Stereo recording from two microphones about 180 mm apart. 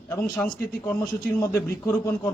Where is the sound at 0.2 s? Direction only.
5° left (ahead or behind).